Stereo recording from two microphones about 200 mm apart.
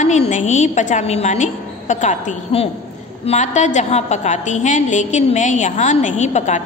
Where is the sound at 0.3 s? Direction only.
35° left (ahead or behind).